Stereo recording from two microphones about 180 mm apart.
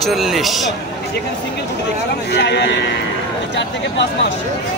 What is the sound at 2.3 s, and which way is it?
Speech, 70° left (ahead or behind).